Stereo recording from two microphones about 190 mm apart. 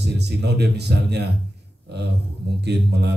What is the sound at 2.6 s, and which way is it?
Speech, 60° right (ahead or behind).